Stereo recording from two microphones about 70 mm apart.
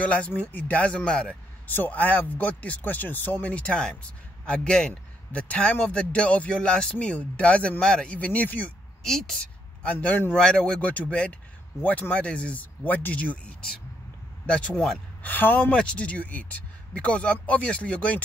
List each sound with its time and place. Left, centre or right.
0.0 s speech: centre
1.7 s a man's voice: left
9.0 s a man's voice: centre
9.8 s speech: left
10.3 s a man's voice: centre
15.2 s speech: left
15.7 s speech: centre